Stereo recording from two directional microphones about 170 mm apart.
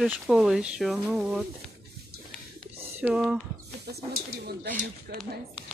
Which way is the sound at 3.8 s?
65° right (ahead or behind).